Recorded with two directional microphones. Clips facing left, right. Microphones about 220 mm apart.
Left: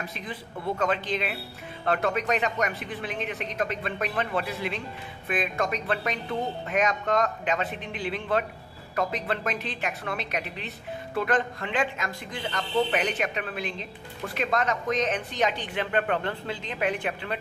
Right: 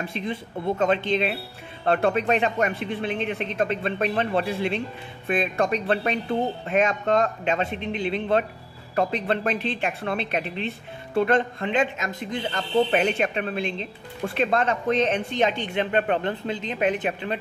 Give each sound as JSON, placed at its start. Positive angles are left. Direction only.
{"t": 0.0, "sound": "speech", "side_deg": -25}